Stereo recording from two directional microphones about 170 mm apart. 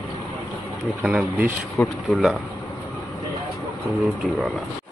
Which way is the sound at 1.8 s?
5° left (ahead or behind).